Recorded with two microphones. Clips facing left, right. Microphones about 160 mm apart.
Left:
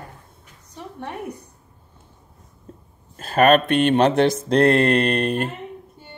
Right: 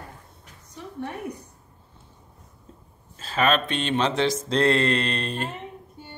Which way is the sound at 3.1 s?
55° left (ahead or behind).